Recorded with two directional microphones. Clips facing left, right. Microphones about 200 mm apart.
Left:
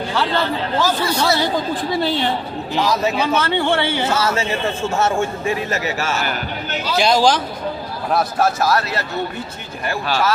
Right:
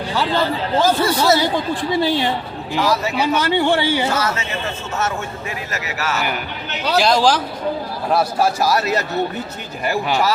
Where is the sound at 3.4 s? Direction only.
15° right (ahead or behind).